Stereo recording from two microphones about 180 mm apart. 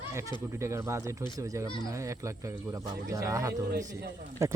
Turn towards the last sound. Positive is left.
turn(degrees=-15)  # may be behind; listen again after turning